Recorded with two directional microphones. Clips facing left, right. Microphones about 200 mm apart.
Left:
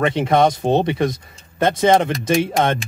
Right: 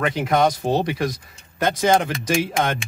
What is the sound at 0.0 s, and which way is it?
Speech, 25° left (ahead or behind).